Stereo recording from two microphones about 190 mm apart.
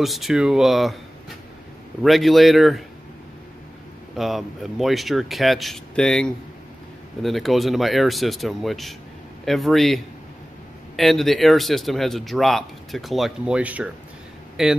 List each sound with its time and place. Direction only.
0.0 s speech: centre (ahead or behind)
2.0 s speech: centre (ahead or behind)
4.2 s speech: centre (ahead or behind)